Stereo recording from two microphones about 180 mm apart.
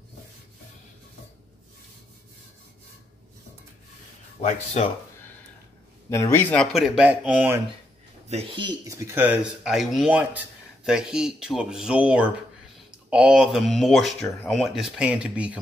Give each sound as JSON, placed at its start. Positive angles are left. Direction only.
{"t": 4.4, "sound": "speech", "side_deg": 35}
{"t": 6.0, "sound": "speech", "side_deg": 15}
{"t": 8.3, "sound": "speech", "side_deg": -30}